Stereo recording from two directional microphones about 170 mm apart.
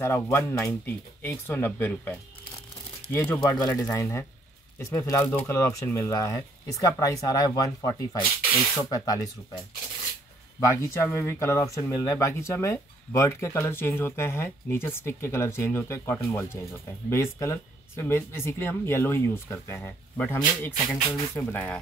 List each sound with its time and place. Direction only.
0.0 s speech: 15° left (ahead or behind)
10.6 s speech: 15° left (ahead or behind)